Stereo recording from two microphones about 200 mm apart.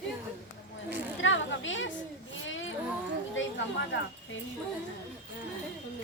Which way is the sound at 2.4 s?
70° left (ahead or behind).